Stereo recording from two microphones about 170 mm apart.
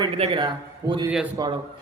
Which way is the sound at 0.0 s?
30° right (ahead or behind).